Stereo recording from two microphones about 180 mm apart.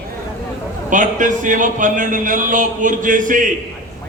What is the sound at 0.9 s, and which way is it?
A man's voice, 45° right (ahead or behind).